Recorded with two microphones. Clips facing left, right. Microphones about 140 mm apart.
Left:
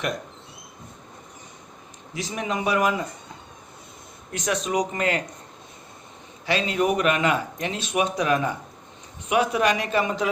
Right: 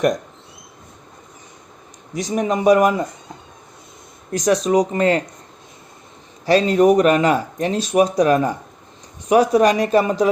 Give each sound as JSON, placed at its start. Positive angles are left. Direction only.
{"t": 2.1, "sound": "speech", "side_deg": -40}
{"t": 4.3, "sound": "speech", "side_deg": -40}
{"t": 6.4, "sound": "speech", "side_deg": -40}